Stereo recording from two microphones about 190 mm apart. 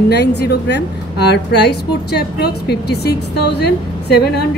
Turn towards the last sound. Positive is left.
turn(degrees=60)  # may be behind; listen again after turning